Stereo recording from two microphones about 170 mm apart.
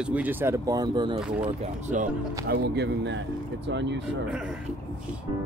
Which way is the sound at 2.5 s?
80° right.